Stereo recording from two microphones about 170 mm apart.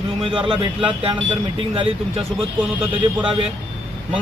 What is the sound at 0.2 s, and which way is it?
Speech, 30° right (ahead or behind).